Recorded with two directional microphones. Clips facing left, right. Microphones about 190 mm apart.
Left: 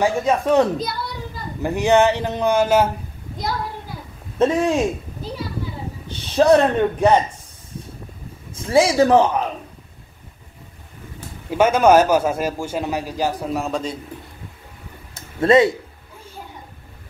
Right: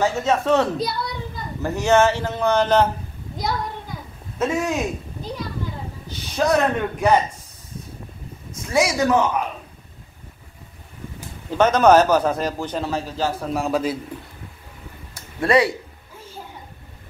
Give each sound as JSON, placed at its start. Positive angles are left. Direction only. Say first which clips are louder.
{"t": 0.0, "sound": "a man's voice", "louder": "left 2 dB", "side_deg": 10}
{"t": 4.4, "sound": "a man's voice", "louder": "left 5 dB", "side_deg": 30}
{"t": 6.2, "sound": "a man's voice", "louder": "left 5 dB", "side_deg": 30}
{"t": 8.6, "sound": "a man's voice", "louder": "left 4 dB", "side_deg": 30}
{"t": 11.5, "sound": "a man's voice", "louder": "left 1 dB", "side_deg": 10}
{"t": 13.5, "sound": "a man's voice", "louder": "right 2 dB", "side_deg": 0}
{"t": 15.1, "sound": "a sound", "louder": "left 4 dB", "side_deg": 25}